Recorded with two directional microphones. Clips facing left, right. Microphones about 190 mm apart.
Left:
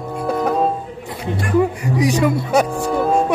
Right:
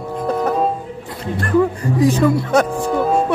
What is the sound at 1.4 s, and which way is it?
Speech, 15° left (ahead or behind).